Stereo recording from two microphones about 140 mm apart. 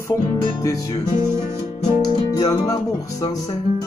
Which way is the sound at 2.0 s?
30° left (ahead or behind).